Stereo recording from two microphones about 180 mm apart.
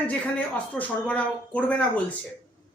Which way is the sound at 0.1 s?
5° left (ahead or behind).